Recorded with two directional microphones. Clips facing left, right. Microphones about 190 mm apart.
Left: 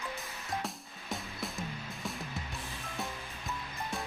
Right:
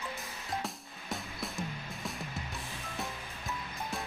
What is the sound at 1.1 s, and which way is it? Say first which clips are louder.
Music: even; centre (ahead or behind).